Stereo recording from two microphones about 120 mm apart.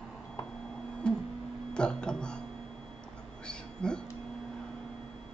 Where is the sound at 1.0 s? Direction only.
10° left (ahead or behind).